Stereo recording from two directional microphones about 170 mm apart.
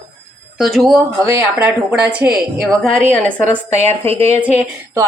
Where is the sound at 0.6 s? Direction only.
Centre (ahead or behind).